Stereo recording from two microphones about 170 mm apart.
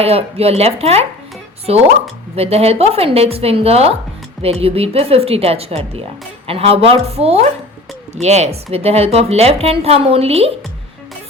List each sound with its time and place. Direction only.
0.0 s speech: 35° right (ahead or behind)
2.3 s speech: 35° right (ahead or behind)